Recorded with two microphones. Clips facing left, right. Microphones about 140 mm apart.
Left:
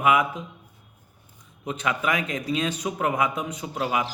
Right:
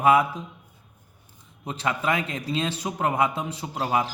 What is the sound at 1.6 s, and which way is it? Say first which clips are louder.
A man's voice: even; 30° right (ahead or behind).